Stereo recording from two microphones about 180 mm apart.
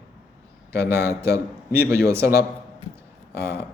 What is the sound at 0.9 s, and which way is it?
Speech, 15° right (ahead or behind).